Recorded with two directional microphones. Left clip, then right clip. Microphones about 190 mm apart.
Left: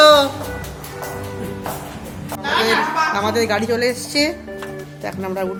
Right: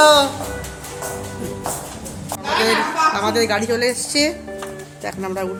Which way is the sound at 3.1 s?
Centre (ahead or behind).